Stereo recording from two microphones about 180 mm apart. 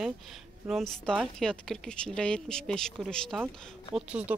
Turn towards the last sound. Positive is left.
turn(degrees=-5)  # may be behind; listen again after turning